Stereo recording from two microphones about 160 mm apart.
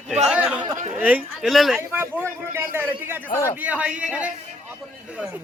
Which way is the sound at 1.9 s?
15° right (ahead or behind).